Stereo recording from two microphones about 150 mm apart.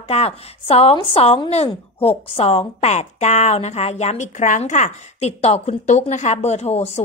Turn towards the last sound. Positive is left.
turn(degrees=45)  # may be behind; listen again after turning